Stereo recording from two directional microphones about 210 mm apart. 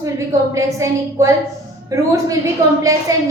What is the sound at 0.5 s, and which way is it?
A woman's voice, 15° right (ahead or behind).